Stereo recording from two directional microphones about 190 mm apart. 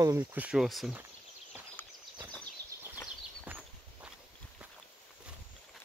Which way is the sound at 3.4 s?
10° right (ahead or behind).